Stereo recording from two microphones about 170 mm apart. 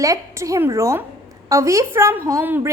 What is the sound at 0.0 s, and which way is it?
A woman's voice, 20° right (ahead or behind).